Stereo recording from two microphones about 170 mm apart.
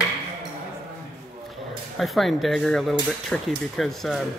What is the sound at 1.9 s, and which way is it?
Speech, centre (ahead or behind).